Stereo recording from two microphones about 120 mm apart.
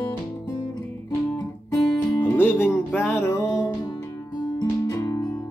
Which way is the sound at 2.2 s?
15° left (ahead or behind).